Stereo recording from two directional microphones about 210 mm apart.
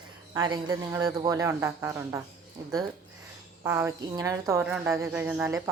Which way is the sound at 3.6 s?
10° right (ahead or behind).